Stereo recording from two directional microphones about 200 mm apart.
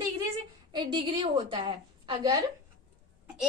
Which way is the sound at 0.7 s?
25° right (ahead or behind).